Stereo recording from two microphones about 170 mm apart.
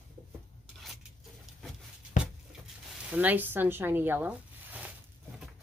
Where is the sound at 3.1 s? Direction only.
10° right (ahead or behind).